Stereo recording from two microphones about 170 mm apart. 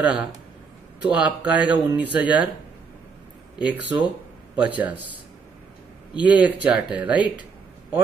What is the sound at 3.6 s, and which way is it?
Speech, 10° right (ahead or behind).